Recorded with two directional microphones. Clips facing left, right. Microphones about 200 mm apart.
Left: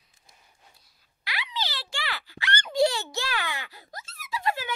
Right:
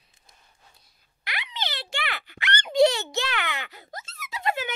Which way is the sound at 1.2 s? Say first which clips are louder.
Even; 55° right (ahead or behind).